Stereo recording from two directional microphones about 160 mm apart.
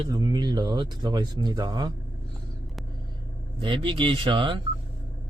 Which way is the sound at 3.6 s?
30° right (ahead or behind).